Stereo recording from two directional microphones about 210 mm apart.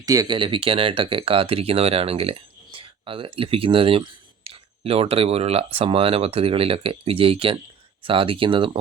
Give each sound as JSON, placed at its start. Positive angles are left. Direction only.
{"t": 0.0, "sound": "speech", "side_deg": -15}